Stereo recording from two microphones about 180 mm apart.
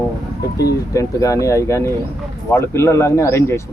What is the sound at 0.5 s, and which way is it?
Speech, 20° left (ahead or behind).